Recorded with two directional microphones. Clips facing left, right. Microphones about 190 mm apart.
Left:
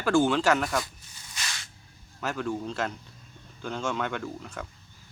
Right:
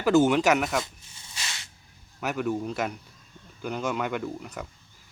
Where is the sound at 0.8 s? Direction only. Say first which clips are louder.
Right 1 dB; 25° right (ahead or behind).